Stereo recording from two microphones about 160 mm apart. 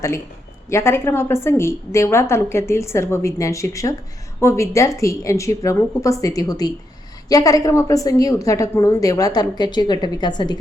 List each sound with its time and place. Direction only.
0.7 s a woman's voice: 15° left (ahead or behind)